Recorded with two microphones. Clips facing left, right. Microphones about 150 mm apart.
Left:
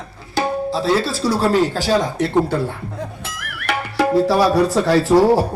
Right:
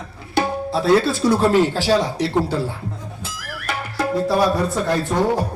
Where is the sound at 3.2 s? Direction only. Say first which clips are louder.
Left 2 dB; 70° left (ahead or behind); by 5.1 s 90° left.